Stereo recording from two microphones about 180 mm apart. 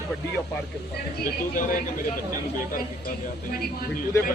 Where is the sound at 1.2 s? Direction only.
50° left (ahead or behind).